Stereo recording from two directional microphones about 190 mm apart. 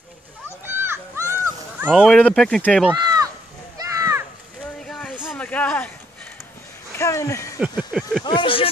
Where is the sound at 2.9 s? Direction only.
20° right (ahead or behind).